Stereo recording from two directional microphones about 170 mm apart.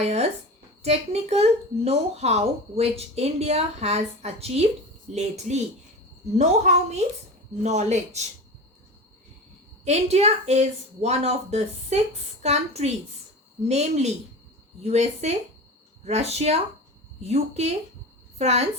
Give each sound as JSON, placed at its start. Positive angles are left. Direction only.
{"t": 0.0, "sound": "speech", "side_deg": -40}
{"t": 9.8, "sound": "a woman's voice", "side_deg": -40}